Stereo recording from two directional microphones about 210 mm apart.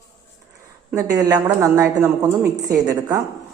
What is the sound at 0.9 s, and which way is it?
Speech, 15° right (ahead or behind).